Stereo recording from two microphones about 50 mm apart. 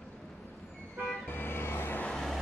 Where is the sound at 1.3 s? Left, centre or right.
Left.